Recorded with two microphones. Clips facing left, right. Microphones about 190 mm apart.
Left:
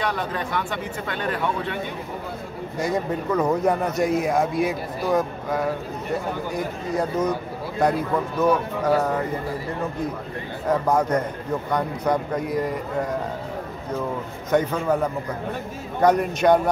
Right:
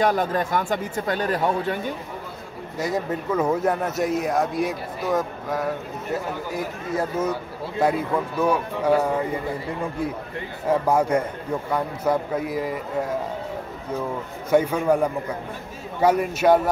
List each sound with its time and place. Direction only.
0.0 s speech: 45° right (ahead or behind)
2.8 s speech: 5° right (ahead or behind)
8.4 s speech: 10° right (ahead or behind)
10.7 s speech: 10° right (ahead or behind)
14.5 s speech: 10° right (ahead or behind)